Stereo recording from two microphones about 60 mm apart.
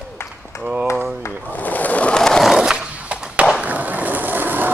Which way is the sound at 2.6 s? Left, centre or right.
Centre.